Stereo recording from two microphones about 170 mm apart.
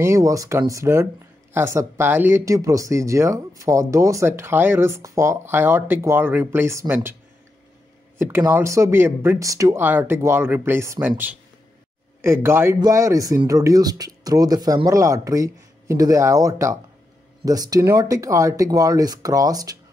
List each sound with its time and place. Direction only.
0.0 s speech: 20° right (ahead or behind)
8.2 s speech: 15° right (ahead or behind)